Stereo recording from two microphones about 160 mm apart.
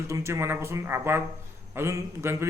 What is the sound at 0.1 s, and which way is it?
A man's voice, 15° right (ahead or behind).